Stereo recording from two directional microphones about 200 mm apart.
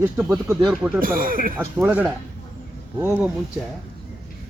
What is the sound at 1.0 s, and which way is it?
Speech, 45° right (ahead or behind).